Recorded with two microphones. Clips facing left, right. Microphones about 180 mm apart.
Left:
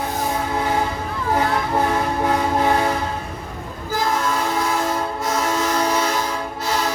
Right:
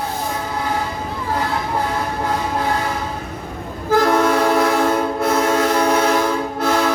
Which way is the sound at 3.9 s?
70° right (ahead or behind).